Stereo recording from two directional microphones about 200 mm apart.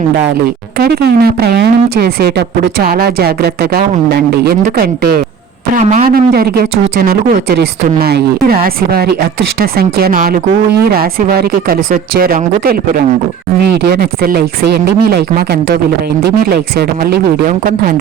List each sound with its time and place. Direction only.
0.8 s speech: 50° right (ahead or behind)
5.7 s speech: 35° right (ahead or behind)